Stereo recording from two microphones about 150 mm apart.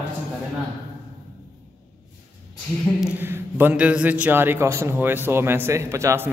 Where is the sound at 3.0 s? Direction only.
10° right (ahead or behind).